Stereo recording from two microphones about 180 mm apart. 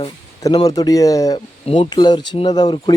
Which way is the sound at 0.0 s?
25° left (ahead or behind).